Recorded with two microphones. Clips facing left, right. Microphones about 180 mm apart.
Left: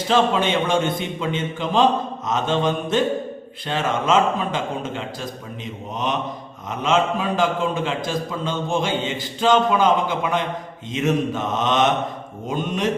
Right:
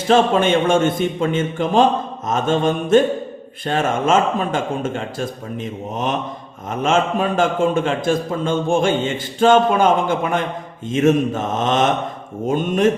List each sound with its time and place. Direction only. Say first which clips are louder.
0.1 s speech: right 5 dB; 50° right (ahead or behind)